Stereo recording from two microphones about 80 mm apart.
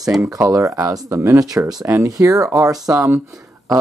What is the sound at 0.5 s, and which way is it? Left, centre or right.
Speech, right.